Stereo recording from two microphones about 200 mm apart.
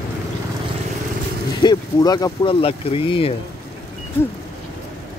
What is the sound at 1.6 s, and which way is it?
Speech, 20° left (ahead or behind).